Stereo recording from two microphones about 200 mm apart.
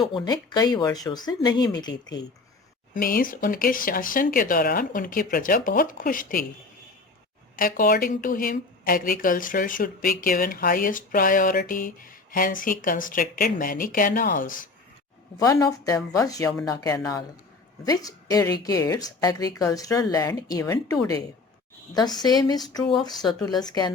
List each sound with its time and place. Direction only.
0.0 s speech: 20° left (ahead or behind)
2.9 s speech: 45° left (ahead or behind)
7.5 s speech: 45° left (ahead or behind)
15.4 s speech: 15° left (ahead or behind)
23.2 s speech: centre (ahead or behind)
23.6 s speech: 20° left (ahead or behind)